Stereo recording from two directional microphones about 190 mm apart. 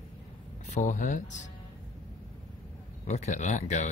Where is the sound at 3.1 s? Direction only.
40° left (ahead or behind).